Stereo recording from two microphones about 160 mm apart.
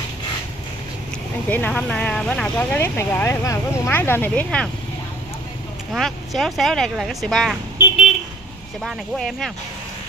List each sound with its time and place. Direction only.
1.5 s speech: 10° left (ahead or behind)
5.9 s speech: centre (ahead or behind)
8.8 s speech: centre (ahead or behind)